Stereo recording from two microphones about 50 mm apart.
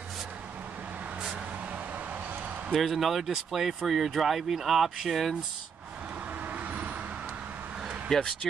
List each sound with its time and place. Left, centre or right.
2.7 s speech: centre
6.5 s vehicle: right
8.1 s speech: centre